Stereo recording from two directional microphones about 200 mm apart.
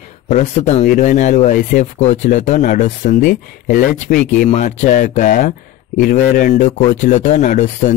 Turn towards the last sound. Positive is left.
turn(degrees=40)  # may be behind; listen again after turning